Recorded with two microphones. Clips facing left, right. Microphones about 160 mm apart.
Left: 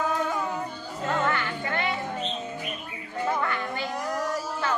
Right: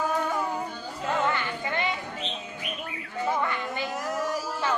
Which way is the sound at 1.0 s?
20° right (ahead or behind).